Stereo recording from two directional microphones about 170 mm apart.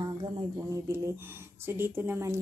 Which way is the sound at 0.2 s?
25° right (ahead or behind).